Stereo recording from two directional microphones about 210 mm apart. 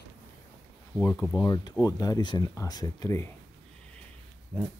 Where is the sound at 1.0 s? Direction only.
10° left (ahead or behind).